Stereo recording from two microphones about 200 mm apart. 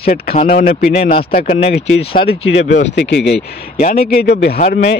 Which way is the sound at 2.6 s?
60° left (ahead or behind).